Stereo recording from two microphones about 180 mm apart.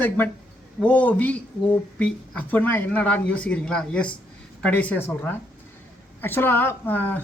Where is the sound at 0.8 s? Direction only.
5° left (ahead or behind).